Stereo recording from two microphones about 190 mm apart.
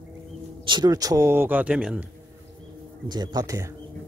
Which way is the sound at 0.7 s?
20° right (ahead or behind).